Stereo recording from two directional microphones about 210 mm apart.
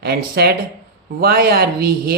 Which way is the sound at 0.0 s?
50° right (ahead or behind).